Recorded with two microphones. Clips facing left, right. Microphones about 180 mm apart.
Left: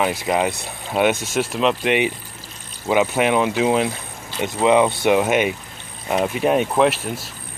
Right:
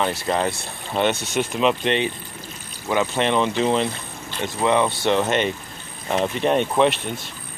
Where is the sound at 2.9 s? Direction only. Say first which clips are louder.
Left 3 dB; 15° left (ahead or behind).